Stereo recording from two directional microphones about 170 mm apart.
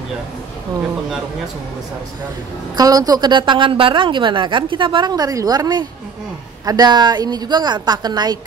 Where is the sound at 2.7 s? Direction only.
20° right (ahead or behind).